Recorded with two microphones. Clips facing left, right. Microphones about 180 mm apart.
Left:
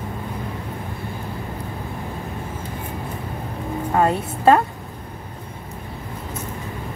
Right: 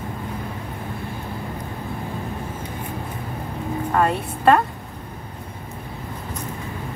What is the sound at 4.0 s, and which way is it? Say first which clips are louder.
Speech: left 2 dB; 20° left (ahead or behind).